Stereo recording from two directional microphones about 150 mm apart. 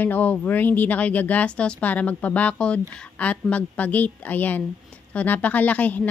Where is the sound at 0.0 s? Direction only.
10° left (ahead or behind).